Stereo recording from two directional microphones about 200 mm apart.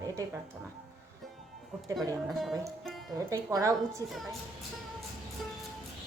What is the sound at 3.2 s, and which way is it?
Speech, 15° right (ahead or behind).